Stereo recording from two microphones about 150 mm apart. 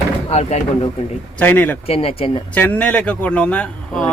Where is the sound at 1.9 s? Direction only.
40° left (ahead or behind).